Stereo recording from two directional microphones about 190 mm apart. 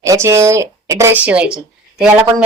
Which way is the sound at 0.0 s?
15° right (ahead or behind).